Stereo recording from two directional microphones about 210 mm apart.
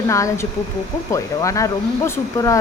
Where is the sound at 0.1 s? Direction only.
15° left (ahead or behind).